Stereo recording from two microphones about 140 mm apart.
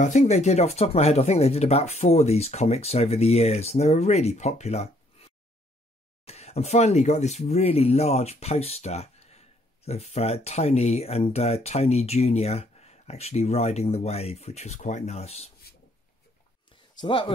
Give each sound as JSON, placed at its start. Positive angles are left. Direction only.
{"t": 0.0, "sound": "speech", "side_deg": 55}
{"t": 16.9, "sound": "speech", "side_deg": 35}